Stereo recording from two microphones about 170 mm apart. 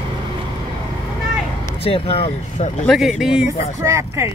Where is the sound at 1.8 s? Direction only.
35° left (ahead or behind).